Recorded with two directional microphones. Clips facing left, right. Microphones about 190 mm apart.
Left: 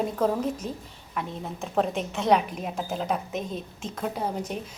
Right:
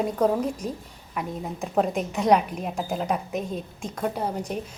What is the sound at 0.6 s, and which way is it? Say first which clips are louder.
Speech: right 2 dB; 40° right (ahead or behind).